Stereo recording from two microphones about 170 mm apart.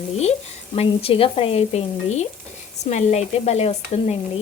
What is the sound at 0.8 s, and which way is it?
Speech, 35° left (ahead or behind).